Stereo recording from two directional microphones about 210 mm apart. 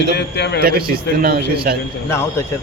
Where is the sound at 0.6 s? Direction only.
45° right (ahead or behind).